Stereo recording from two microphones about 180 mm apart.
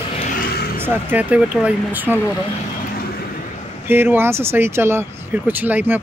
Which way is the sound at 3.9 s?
10° right (ahead or behind).